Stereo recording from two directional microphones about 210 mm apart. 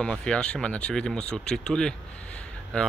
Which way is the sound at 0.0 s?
5° left (ahead or behind).